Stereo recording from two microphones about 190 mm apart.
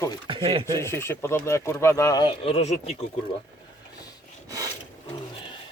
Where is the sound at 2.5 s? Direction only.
35° left (ahead or behind).